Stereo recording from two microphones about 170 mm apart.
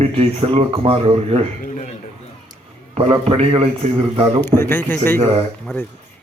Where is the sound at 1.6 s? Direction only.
45° left (ahead or behind).